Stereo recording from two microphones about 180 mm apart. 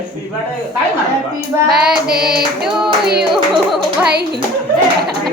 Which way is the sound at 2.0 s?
60° right (ahead or behind).